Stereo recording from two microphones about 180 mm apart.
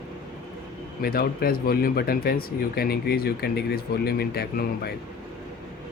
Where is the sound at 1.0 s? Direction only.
55° left (ahead or behind).